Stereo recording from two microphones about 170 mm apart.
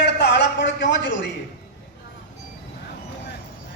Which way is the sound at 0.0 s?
90° left.